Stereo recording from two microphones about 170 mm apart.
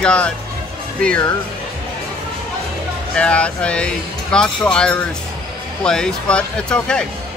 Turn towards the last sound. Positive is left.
turn(degrees=5)  # may be behind; listen again after turning